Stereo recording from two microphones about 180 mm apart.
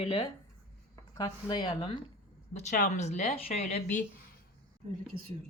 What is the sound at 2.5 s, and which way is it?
Speech, 40° left (ahead or behind).